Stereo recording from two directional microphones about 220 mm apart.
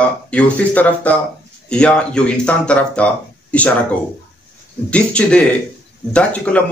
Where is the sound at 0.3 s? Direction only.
5° left (ahead or behind).